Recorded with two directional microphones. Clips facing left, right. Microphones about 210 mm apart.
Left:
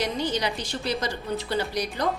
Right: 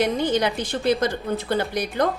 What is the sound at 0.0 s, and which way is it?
Speech, 55° right (ahead or behind).